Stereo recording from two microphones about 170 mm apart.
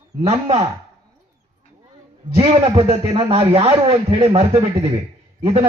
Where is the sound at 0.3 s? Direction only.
40° right (ahead or behind).